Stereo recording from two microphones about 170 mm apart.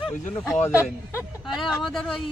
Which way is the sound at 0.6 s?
15° left (ahead or behind).